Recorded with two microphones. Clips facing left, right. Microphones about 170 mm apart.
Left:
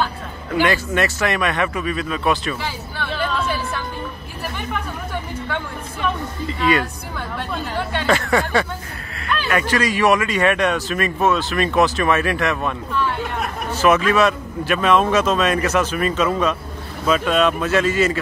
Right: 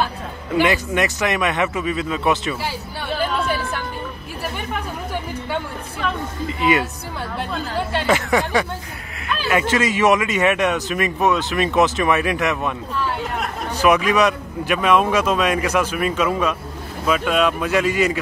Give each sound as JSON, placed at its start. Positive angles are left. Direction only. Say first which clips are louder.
{"t": 0.5, "sound": "speech", "louder": "right 1 dB", "side_deg": -15}
{"t": 6.6, "sound": "speech", "louder": "even", "side_deg": -20}
{"t": 8.1, "sound": "a man's voice", "louder": "left 1 dB", "side_deg": -20}